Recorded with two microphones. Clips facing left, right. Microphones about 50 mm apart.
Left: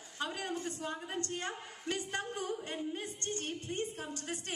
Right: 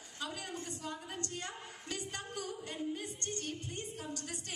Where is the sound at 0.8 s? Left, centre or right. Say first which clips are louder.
Left 4 dB; left.